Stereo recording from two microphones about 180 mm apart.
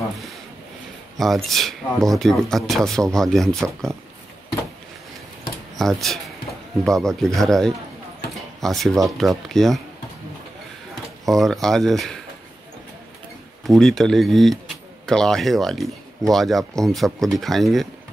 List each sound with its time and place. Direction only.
1.1 s speech: centre (ahead or behind)
5.8 s speech: centre (ahead or behind)
11.2 s speech: centre (ahead or behind)
13.7 s speech: centre (ahead or behind)